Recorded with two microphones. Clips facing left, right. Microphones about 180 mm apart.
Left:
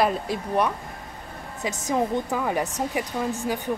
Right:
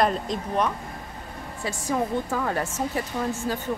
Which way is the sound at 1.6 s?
20° left (ahead or behind).